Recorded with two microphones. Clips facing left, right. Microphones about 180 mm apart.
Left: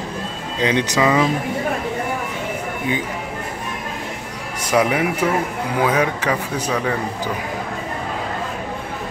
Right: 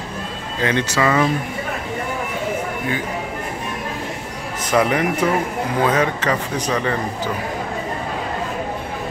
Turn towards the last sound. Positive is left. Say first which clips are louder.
# even
turn(degrees=10)  # may be behind; listen again after turning